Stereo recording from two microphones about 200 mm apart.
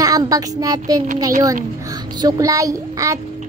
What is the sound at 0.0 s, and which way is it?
A child's voice, 20° right (ahead or behind).